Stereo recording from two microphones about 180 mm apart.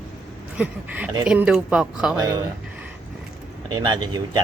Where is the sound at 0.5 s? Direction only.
10° right (ahead or behind).